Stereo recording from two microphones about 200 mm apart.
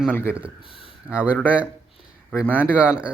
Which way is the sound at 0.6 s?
25° left (ahead or behind).